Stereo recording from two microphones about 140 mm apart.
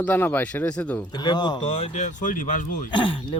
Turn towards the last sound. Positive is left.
turn(degrees=35)  # may be behind; listen again after turning